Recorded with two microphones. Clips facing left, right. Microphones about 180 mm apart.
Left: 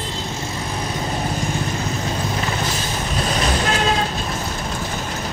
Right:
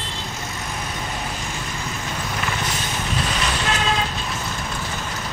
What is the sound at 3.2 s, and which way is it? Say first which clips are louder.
Vehicle: left 6 dB; 40° left (ahead or behind).